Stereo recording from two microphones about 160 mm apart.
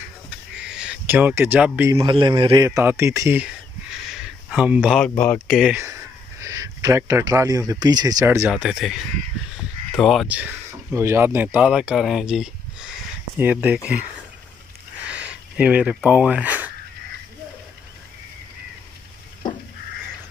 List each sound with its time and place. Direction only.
0.7 s speech: 5° right (ahead or behind)
2.0 s a man's voice: 30° right (ahead or behind)
2.7 s speech: 15° right (ahead or behind)
4.1 s a sound: 5° right (ahead or behind)
5.1 s speech: 10° left (ahead or behind)
5.5 s speech: 5° right (ahead or behind)
6.4 s speech: 20° right (ahead or behind)
8.5 s speech: 5° right (ahead or behind)
15.0 s a sound: 5° right (ahead or behind)